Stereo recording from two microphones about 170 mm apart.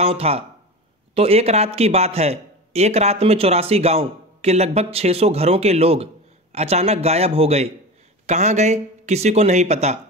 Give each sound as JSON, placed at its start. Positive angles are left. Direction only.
{"t": 0.0, "sound": "a man's voice", "side_deg": -35}